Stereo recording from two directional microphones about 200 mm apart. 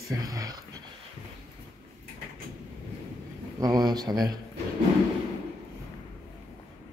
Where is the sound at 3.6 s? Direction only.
20° right (ahead or behind).